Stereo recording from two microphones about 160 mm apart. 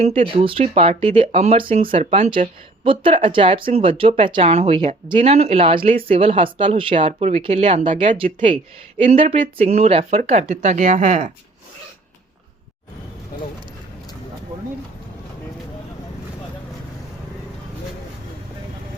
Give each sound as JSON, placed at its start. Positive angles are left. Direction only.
{"t": 0.0, "sound": "speech", "side_deg": -40}
{"t": 9.0, "sound": "speech", "side_deg": -35}